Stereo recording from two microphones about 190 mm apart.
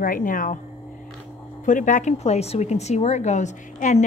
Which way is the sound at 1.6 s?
40° left (ahead or behind).